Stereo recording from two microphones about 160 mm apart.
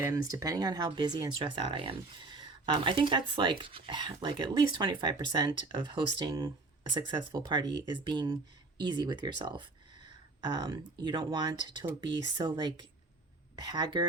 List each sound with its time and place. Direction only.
0.0 s speech: 20° right (ahead or behind)